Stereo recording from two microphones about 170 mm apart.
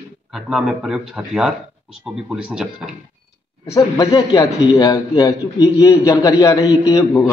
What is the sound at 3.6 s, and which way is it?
A man's voice, 20° left (ahead or behind).